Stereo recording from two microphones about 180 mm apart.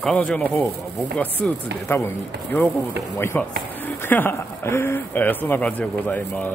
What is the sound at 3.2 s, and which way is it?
Speech, 10° left (ahead or behind).